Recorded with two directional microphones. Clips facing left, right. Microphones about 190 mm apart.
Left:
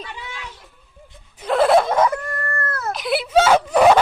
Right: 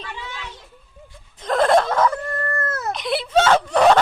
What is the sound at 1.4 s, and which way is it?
Snicker, 5° left (ahead or behind).